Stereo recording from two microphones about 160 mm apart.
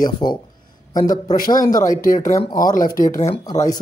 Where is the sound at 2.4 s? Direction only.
25° left (ahead or behind).